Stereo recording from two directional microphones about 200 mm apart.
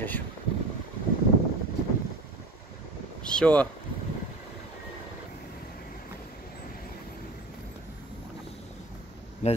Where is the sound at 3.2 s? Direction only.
5° left (ahead or behind).